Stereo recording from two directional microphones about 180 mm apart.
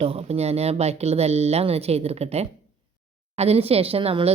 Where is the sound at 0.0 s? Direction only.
35° right (ahead or behind).